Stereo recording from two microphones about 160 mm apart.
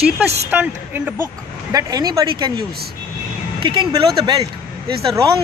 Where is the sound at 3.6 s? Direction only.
30° right (ahead or behind).